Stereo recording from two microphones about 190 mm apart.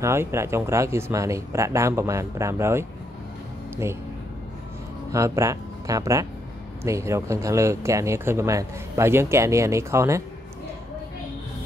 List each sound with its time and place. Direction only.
0.0 s speech: 15° right (ahead or behind)
5.1 s speech: 15° right (ahead or behind)